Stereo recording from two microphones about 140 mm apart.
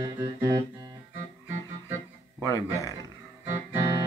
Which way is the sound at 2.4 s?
20° left (ahead or behind).